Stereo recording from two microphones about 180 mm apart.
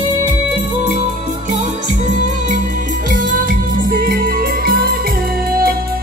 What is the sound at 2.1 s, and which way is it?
Music, 45° right (ahead or behind).